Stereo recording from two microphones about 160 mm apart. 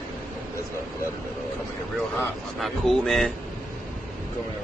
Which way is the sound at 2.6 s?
Centre (ahead or behind).